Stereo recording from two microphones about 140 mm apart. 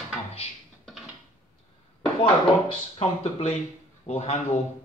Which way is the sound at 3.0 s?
50° left (ahead or behind).